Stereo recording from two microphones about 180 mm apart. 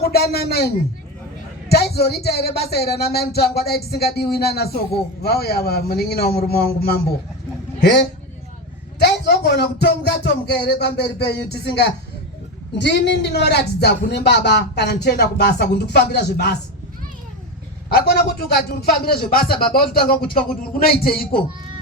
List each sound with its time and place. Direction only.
0.0 s speech: 60° left (ahead or behind)
1.7 s speech: 60° left (ahead or behind)
7.8 s a woman's voice: 70° left (ahead or behind)
17.8 s speech: 65° left (ahead or behind)